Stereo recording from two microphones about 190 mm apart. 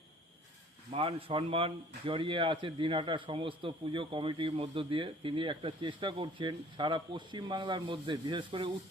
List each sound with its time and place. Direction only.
0.9 s speech: 30° right (ahead or behind)